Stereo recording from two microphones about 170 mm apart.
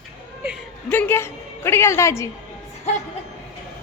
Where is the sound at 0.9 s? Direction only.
10° left (ahead or behind).